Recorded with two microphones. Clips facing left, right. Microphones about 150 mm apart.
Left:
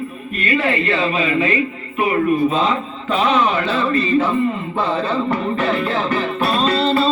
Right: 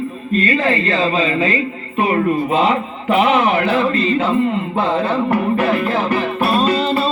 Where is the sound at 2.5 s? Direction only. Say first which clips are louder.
Right 3 dB; 65° right (ahead or behind).